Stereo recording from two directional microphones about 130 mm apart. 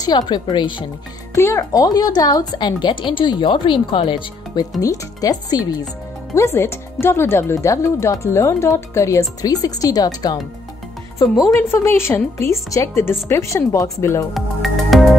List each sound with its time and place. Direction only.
0.0 s speech: 35° left (ahead or behind)
1.3 s speech: 20° left (ahead or behind)
14.3 s music: centre (ahead or behind)